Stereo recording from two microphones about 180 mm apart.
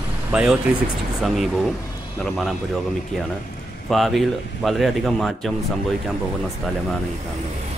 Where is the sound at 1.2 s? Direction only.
Centre (ahead or behind).